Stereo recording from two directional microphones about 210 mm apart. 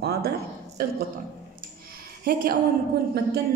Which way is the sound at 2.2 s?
45° right (ahead or behind).